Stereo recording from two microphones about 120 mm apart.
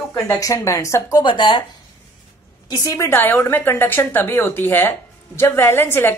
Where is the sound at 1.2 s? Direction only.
40° left (ahead or behind).